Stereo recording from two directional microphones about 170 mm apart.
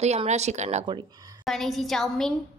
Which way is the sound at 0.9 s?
25° right (ahead or behind).